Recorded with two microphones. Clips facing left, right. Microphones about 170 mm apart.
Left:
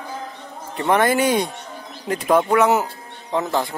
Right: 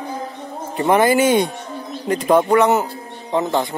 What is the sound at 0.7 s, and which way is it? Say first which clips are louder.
Speech: right 3 dB; 5° right (ahead or behind).